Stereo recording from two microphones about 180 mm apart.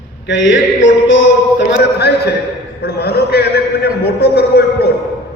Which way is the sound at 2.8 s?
65° left (ahead or behind).